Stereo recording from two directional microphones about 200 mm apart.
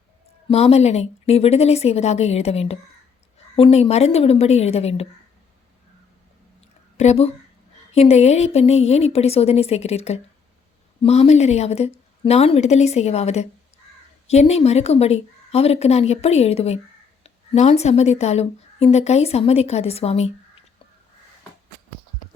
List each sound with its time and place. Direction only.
0.4 s a woman's voice: 30° left (ahead or behind)
6.9 s a woman's voice: 35° left (ahead or behind)